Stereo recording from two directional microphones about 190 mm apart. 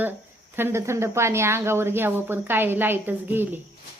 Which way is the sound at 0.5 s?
10° right (ahead or behind).